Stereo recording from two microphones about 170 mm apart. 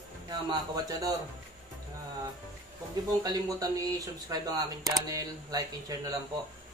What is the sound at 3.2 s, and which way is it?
Speech, 20° right (ahead or behind).